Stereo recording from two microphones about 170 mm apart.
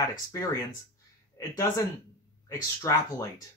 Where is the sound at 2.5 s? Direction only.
20° left (ahead or behind).